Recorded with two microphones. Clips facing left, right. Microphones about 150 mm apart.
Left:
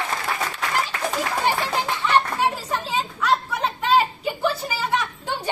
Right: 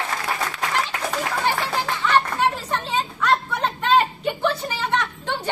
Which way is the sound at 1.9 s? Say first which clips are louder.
Right 1 dB; 15° left (ahead or behind).